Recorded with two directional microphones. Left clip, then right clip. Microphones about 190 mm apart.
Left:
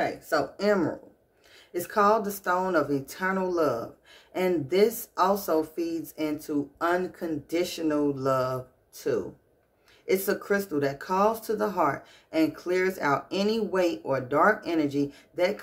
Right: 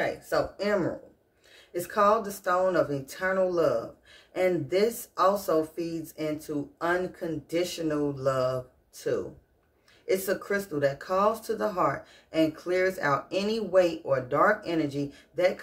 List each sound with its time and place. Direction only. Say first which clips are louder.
0.0 s speech: left 1 dB; 35° left (ahead or behind)